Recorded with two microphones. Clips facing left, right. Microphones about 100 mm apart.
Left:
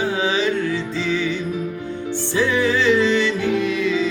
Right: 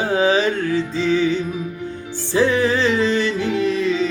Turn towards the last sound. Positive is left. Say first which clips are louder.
# right 1 dB
turn(degrees=-35)  # may be behind; listen again after turning